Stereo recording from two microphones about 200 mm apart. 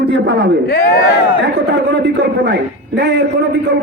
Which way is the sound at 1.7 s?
55° right (ahead or behind).